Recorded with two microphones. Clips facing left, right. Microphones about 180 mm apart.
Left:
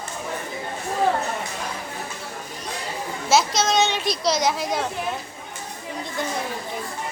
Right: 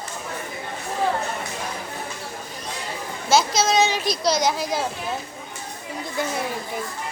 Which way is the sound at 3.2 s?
Centre (ahead or behind).